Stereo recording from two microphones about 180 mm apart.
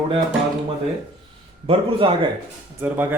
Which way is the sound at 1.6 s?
30° right (ahead or behind).